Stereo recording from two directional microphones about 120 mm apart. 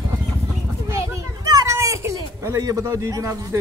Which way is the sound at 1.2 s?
30° right (ahead or behind).